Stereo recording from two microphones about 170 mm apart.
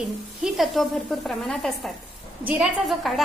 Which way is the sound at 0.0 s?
Centre (ahead or behind).